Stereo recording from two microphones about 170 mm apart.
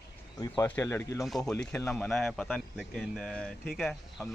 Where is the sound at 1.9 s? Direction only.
5° left (ahead or behind).